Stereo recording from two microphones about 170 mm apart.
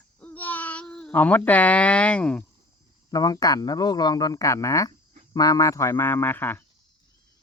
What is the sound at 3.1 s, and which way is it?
A man's voice, 20° left (ahead or behind).